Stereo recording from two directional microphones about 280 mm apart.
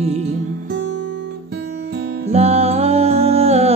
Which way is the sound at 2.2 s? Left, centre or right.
Right.